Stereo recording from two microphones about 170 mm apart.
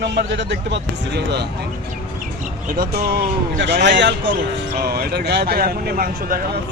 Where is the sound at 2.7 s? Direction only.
60° right (ahead or behind); by 4.3 s 90° right.